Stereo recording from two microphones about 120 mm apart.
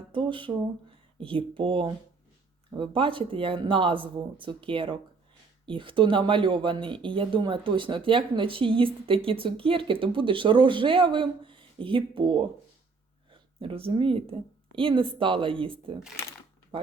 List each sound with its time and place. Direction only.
0.1 s a woman's voice: 45° right (ahead or behind)